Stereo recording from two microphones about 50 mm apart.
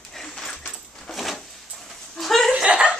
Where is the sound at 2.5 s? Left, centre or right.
Right.